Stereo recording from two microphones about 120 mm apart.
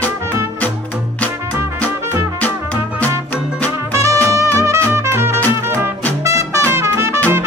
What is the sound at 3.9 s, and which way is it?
Music, 25° right (ahead or behind).